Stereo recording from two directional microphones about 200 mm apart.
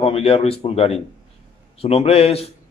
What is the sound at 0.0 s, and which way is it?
Speech, 30° left (ahead or behind).